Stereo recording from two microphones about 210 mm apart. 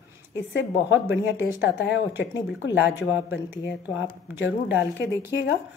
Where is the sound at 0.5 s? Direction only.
55° left (ahead or behind).